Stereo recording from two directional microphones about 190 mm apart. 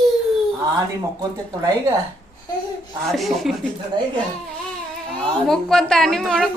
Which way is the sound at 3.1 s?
Centre (ahead or behind).